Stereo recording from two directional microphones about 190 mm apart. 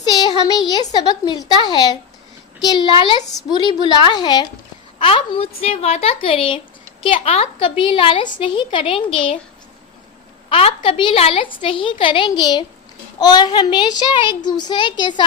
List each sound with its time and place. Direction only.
0.0 s a woman's voice: 20° left (ahead or behind)
10.5 s a woman's voice: 30° left (ahead or behind)